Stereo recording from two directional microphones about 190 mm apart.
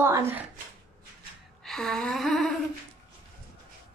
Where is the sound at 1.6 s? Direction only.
Centre (ahead or behind).